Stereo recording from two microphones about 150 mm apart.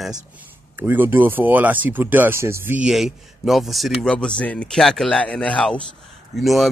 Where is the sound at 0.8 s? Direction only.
15° right (ahead or behind).